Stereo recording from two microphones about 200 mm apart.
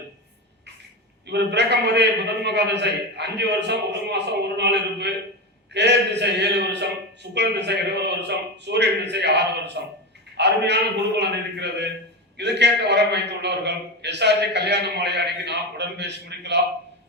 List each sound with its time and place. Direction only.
1.3 s a man's voice: 60° right (ahead or behind)